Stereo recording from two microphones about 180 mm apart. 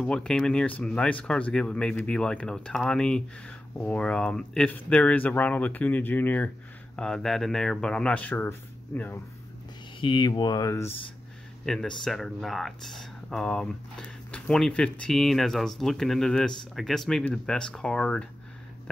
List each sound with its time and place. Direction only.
0.0 s speech: 5° left (ahead or behind)
9.9 s speech: 25° left (ahead or behind)
11.6 s speech: centre (ahead or behind)